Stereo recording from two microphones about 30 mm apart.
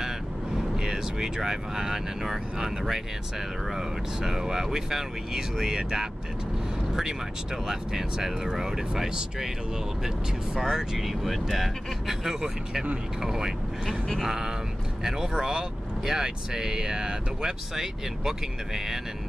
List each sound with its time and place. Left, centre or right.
0.7 s speech: centre
6.9 s vehicle: centre
7.6 s speech: centre
11.0 s speech: centre
12.1 s speech: centre